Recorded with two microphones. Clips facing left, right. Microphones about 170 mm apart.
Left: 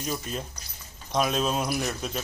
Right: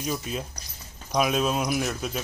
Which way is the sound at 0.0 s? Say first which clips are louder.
Right 2 dB; 5° right (ahead or behind).